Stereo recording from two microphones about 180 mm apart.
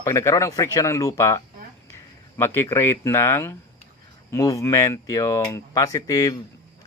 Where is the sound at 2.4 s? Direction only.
15° left (ahead or behind).